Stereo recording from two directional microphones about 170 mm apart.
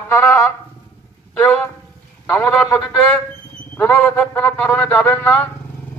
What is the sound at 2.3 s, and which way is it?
A man's voice, 5° left (ahead or behind).